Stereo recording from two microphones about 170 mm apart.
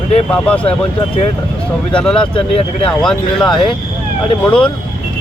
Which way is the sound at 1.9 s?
5° left (ahead or behind).